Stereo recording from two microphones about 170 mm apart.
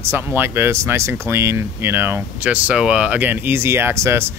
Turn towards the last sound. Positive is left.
turn(degrees=-15)  # may be behind; listen again after turning